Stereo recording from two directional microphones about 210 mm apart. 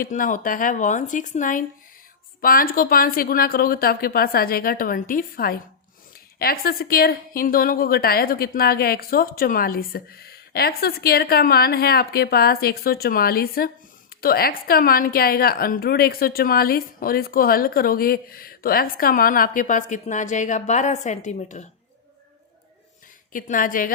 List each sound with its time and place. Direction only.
0.0 s a woman's voice: 40° left (ahead or behind)
23.3 s speech: 40° left (ahead or behind)